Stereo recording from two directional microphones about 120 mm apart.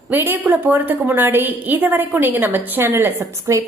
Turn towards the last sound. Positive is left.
turn(degrees=-20)  # may be behind; listen again after turning